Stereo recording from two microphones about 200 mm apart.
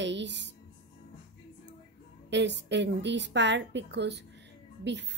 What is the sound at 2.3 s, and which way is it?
A woman's voice, 60° right (ahead or behind).